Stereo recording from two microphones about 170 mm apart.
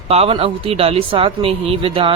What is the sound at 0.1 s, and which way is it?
Speech, 35° right (ahead or behind).